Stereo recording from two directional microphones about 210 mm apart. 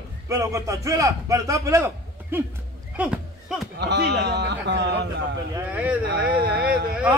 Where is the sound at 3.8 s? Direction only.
55° right (ahead or behind).